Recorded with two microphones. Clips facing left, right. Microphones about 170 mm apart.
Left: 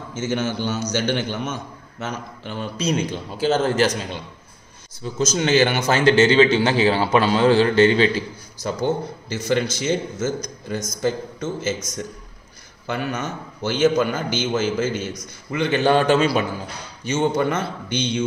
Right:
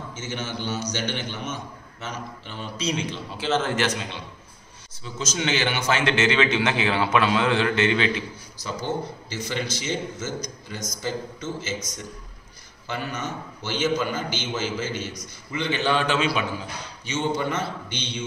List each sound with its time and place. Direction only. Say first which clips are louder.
0.1 s a man's voice: left 10 dB; 45° left (ahead or behind)
9.3 s a man's voice: left 9 dB; 50° left (ahead or behind)